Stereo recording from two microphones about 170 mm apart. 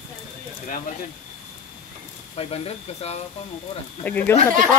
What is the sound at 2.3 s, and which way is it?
Speech, 35° left (ahead or behind).